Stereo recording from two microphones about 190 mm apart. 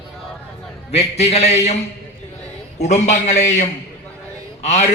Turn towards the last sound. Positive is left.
turn(degrees=35)  # may be behind; listen again after turning